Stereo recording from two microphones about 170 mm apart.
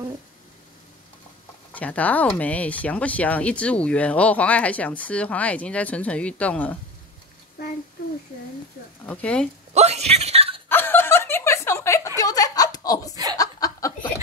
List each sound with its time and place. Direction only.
1.7 s speech: 10° left (ahead or behind)
9.0 s speech: 5° left (ahead or behind)
9.8 s a sound: 40° right (ahead or behind)
10.7 s snicker: 10° left (ahead or behind)
12.2 s chuckle: 20° left (ahead or behind)
13.1 s chuckle: 20° right (ahead or behind)
13.4 s chuckle: 20° left (ahead or behind)